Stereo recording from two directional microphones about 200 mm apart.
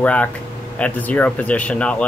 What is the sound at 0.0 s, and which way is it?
Speech, 5° left (ahead or behind).